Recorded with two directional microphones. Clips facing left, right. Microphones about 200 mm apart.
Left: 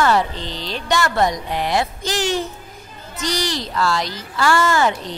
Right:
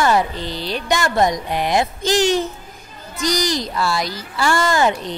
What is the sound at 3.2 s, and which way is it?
Speech, 15° right (ahead or behind).